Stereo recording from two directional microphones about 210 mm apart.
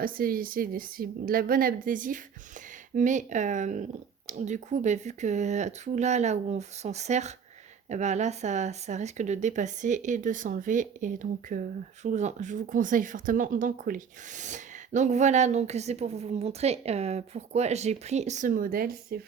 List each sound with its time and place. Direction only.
0.0 s a woman's voice: 45° right (ahead or behind)